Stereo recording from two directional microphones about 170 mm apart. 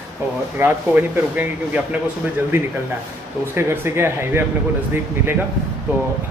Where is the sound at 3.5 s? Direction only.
15° right (ahead or behind).